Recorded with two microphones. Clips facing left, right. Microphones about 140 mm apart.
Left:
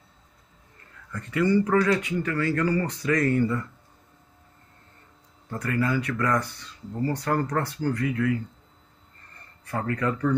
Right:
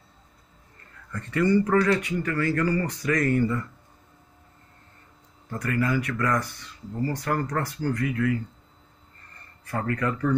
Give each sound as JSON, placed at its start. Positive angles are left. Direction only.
{"t": 1.1, "sound": "speech", "side_deg": 10}
{"t": 5.6, "sound": "speech", "side_deg": 20}
{"t": 9.7, "sound": "speech", "side_deg": 20}